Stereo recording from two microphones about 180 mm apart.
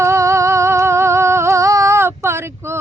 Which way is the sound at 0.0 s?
15° right (ahead or behind).